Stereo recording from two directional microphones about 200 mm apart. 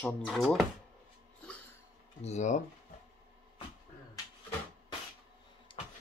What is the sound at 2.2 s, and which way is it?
Speech, 35° left (ahead or behind).